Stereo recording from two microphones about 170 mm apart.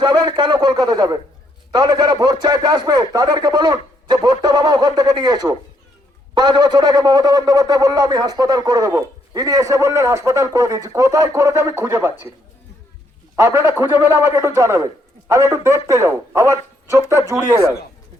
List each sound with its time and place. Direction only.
0.0 s a man's voice: 25° right (ahead or behind)
13.3 s a man's voice: 15° right (ahead or behind)